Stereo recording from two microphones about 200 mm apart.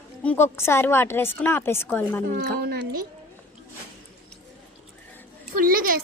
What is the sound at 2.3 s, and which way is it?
Speech, 45° right (ahead or behind).